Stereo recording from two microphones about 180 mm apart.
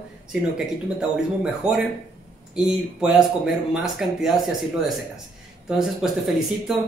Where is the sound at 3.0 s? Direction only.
5° right (ahead or behind).